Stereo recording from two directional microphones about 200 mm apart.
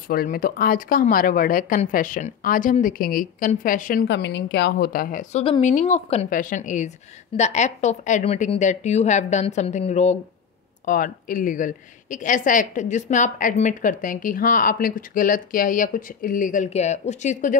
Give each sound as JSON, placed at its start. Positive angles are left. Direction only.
{"t": 0.1, "sound": "a woman's voice", "side_deg": 45}
{"t": 4.1, "sound": "a woman's voice", "side_deg": 60}
{"t": 5.4, "sound": "speech", "side_deg": 25}
{"t": 5.7, "sound": "a woman's voice", "side_deg": 40}